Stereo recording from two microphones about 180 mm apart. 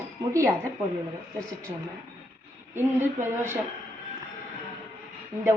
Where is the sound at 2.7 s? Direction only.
10° right (ahead or behind).